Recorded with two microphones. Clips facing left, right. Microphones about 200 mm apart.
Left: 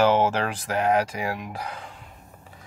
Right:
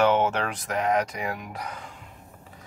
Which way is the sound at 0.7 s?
10° left (ahead or behind).